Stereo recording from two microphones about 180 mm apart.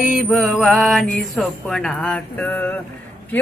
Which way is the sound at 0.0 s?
Centre (ahead or behind).